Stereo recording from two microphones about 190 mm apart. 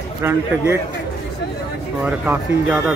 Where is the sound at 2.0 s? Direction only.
5° right (ahead or behind).